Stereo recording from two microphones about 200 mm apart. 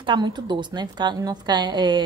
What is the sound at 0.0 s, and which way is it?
A woman's voice, 20° right (ahead or behind).